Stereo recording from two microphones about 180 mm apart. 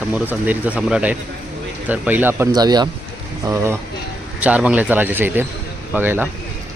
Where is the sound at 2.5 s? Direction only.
20° right (ahead or behind).